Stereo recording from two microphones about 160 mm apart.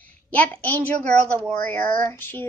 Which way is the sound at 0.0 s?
10° left (ahead or behind).